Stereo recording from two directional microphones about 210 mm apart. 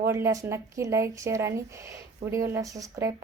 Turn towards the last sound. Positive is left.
turn(degrees=-15)  # may be behind; listen again after turning